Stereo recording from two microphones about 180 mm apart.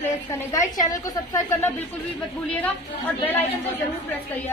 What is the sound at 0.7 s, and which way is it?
Speech, 20° left (ahead or behind).